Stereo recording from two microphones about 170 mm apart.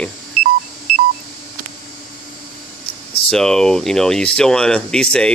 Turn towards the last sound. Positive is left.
turn(degrees=5)  # may be behind; listen again after turning